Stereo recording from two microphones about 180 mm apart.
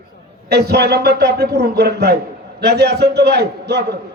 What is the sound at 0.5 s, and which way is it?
A man's voice, 65° right (ahead or behind).